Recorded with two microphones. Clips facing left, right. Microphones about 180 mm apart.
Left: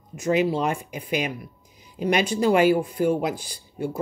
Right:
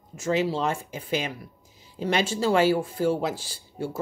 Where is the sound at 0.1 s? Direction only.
15° left (ahead or behind).